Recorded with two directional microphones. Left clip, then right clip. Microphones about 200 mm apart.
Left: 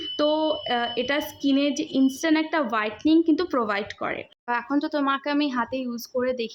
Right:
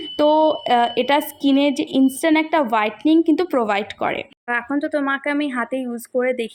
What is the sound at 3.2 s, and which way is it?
A woman's voice, 15° right (ahead or behind).